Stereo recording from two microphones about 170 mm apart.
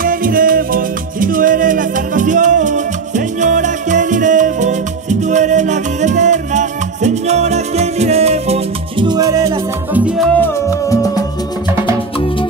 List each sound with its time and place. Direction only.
0.0 s music: 55° right (ahead or behind); by 8.5 s 40° right (ahead or behind)
9.0 s music: 25° right (ahead or behind)
9.9 s salsa music: 5° right (ahead or behind)
10.9 s music: 20° left (ahead or behind)